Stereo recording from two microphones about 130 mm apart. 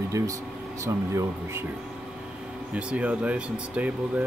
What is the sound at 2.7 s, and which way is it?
Speech, 10° right (ahead or behind).